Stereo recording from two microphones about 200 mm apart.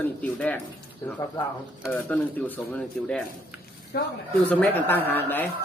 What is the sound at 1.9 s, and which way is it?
Speech, 10° left (ahead or behind).